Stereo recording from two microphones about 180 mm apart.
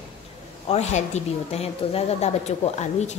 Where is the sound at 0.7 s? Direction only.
40° left (ahead or behind).